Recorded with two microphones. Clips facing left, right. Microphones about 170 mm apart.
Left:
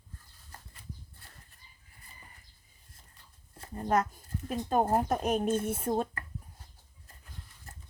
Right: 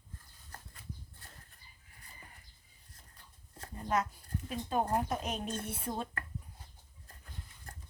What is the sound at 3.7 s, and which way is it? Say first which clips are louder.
Speech: left 5 dB; 50° left (ahead or behind).